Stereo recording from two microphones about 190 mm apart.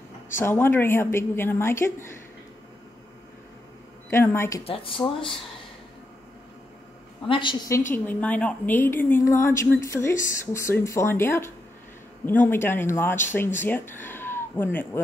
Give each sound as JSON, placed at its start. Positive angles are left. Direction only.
{"t": 0.4, "sound": "a woman's voice", "side_deg": 10}
{"t": 4.1, "sound": "a woman's voice", "side_deg": 15}
{"t": 4.6, "sound": "speech", "side_deg": 30}
{"t": 7.2, "sound": "speech", "side_deg": 25}
{"t": 7.9, "sound": "a woman's voice", "side_deg": 10}